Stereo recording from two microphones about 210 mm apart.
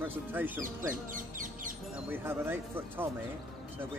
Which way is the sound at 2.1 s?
10° right (ahead or behind).